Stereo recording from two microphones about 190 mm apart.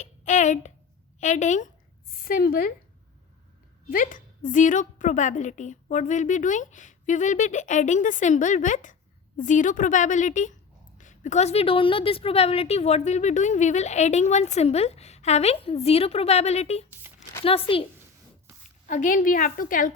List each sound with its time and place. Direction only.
0.0 s a woman's voice: 40° left (ahead or behind)
3.8 s a woman's voice: 45° left (ahead or behind); by 17.8 s 30° left (ahead or behind)
18.9 s a woman's voice: 45° left (ahead or behind)